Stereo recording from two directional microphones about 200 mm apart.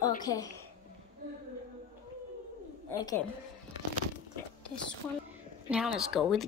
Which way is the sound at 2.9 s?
15° left (ahead or behind).